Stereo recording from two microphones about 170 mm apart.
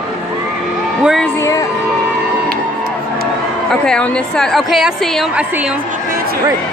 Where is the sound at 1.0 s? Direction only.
Centre (ahead or behind).